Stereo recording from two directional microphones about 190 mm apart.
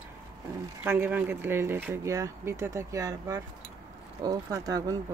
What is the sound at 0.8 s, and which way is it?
Speech, 10° right (ahead or behind).